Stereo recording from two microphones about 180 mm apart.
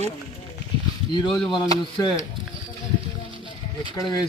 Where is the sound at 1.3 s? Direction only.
Centre (ahead or behind).